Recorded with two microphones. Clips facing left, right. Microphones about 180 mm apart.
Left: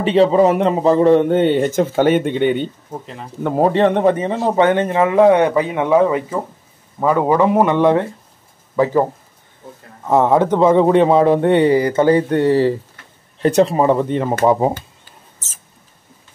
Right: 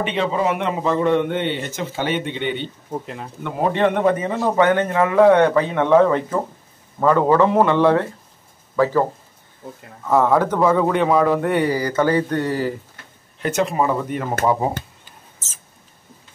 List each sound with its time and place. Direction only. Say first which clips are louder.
0.0 s a man's voice: left 8 dB; 35° left (ahead or behind)
2.9 s speech: right 2 dB; 5° right (ahead or behind)
3.4 s a man's voice: left 5 dB; 40° left (ahead or behind); by 9.0 s 20° left (ahead or behind)
10.0 s a man's voice: left 3 dB; 20° left (ahead or behind)